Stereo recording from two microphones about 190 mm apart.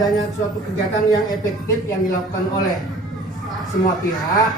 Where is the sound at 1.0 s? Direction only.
20° left (ahead or behind).